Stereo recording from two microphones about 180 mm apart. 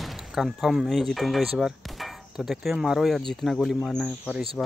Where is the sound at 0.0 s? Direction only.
Centre (ahead or behind).